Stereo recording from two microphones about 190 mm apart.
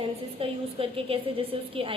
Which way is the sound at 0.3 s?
30° right (ahead or behind).